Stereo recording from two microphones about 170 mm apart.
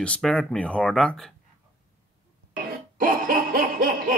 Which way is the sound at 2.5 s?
55° right (ahead or behind).